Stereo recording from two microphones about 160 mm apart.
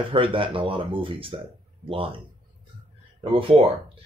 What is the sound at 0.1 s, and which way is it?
Speech, 35° right (ahead or behind).